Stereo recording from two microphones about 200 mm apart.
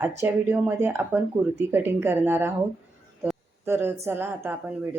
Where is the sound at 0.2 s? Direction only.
10° right (ahead or behind).